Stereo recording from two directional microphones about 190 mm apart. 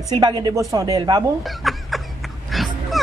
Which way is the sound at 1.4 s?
Centre (ahead or behind).